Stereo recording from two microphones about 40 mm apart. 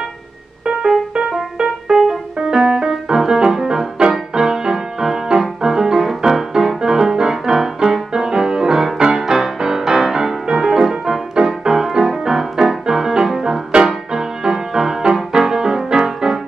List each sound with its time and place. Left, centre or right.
1.6 s music: centre